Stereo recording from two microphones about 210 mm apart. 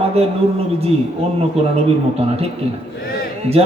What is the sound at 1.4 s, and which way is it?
A man's voice, 30° right (ahead or behind).